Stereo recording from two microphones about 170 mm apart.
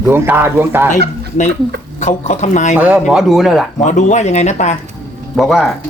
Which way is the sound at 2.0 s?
45° left (ahead or behind).